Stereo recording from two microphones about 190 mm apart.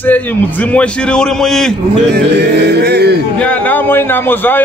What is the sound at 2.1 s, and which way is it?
Music, 60° right (ahead or behind).